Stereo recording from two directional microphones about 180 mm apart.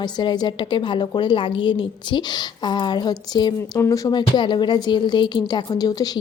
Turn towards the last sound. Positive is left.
turn(degrees=20)  # may be behind; listen again after turning